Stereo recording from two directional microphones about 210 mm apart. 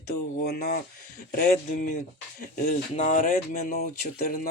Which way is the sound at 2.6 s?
35° left (ahead or behind).